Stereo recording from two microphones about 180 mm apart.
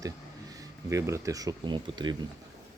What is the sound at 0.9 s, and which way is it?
Speech, 15° right (ahead or behind).